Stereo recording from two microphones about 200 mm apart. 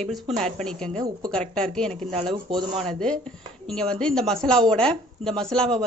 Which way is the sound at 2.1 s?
25° right (ahead or behind).